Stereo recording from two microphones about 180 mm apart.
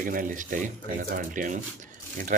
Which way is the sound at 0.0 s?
50° right (ahead or behind).